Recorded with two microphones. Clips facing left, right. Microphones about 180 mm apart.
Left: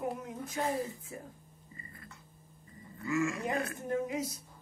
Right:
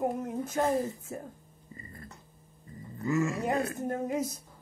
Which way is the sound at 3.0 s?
40° right (ahead or behind).